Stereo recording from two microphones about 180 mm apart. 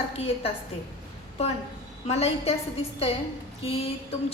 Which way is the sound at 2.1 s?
35° left (ahead or behind).